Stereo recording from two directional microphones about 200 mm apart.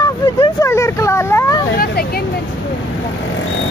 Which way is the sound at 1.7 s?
50° left (ahead or behind).